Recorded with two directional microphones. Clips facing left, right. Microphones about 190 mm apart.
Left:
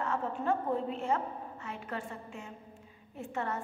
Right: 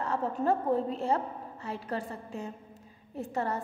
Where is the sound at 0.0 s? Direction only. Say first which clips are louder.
Right 3 dB; 35° right (ahead or behind).